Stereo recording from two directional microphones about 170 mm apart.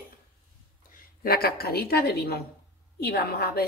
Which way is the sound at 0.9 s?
60° left (ahead or behind).